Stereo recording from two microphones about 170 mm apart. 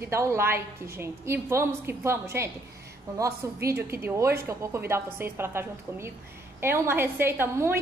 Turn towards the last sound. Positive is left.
turn(degrees=-15)  # may be behind; listen again after turning